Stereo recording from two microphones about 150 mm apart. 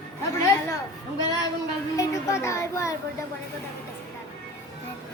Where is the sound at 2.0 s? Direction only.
20° left (ahead or behind).